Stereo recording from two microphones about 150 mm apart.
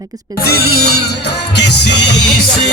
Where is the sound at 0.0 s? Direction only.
25° right (ahead or behind).